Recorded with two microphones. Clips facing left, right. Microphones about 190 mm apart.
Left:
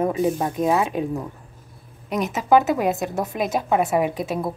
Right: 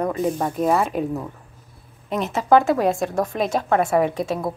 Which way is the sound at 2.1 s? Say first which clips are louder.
Right 1 dB; 15° left (ahead or behind).